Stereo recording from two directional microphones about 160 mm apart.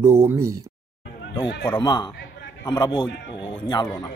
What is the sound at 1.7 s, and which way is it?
Speech, 25° left (ahead or behind).